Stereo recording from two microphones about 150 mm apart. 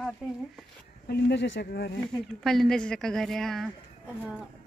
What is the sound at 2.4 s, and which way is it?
Speech, centre (ahead or behind).